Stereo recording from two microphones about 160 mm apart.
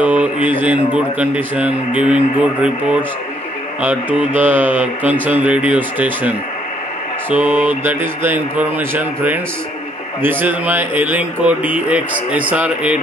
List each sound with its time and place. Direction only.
0.0 s mantra: 10° right (ahead or behind)
7.4 s mantra: 10° right (ahead or behind)